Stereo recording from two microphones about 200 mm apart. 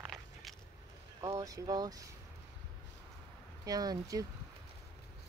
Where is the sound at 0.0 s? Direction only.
Centre (ahead or behind).